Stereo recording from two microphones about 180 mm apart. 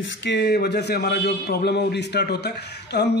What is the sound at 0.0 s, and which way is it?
A man's voice, 75° left (ahead or behind).